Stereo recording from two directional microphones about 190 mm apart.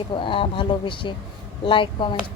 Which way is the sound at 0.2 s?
25° left (ahead or behind).